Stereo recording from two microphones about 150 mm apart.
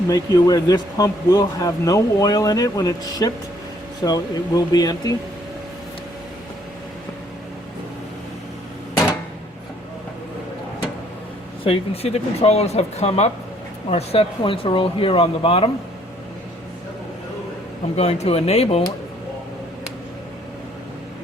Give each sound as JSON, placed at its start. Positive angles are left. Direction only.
{"t": 0.1, "sound": "speech", "side_deg": 25}
{"t": 11.6, "sound": "speech", "side_deg": 40}
{"t": 17.9, "sound": "speech", "side_deg": 45}